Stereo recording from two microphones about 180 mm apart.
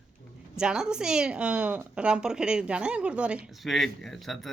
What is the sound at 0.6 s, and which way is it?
A woman's voice, 5° right (ahead or behind).